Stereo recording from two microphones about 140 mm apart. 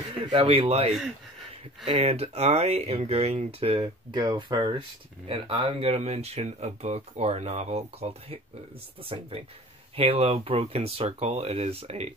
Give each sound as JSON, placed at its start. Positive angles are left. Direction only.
{"t": 0.2, "sound": "speech", "side_deg": -40}
{"t": 2.0, "sound": "speech", "side_deg": -45}
{"t": 5.2, "sound": "speech", "side_deg": -40}
{"t": 9.9, "sound": "speech", "side_deg": -45}